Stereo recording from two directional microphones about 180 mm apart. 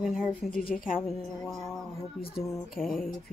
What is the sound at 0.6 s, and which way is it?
Speech, 50° left (ahead or behind).